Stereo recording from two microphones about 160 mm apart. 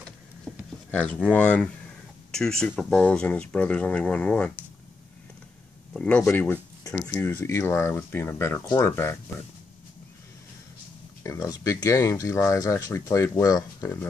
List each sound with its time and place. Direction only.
0.9 s speech: 10° left (ahead or behind)
5.9 s speech: 10° left (ahead or behind)
11.2 s speech: 25° left (ahead or behind)